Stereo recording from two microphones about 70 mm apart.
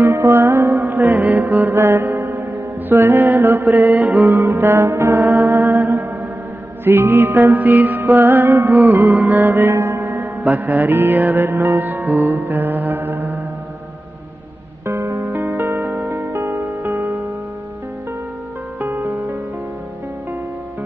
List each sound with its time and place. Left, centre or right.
0.0 s music: right
0.8 s music: right
8.9 s music: right
9.5 s mantra: right
10.6 s music: right
14.9 s music: right
15.2 s music: right
18.8 s music: right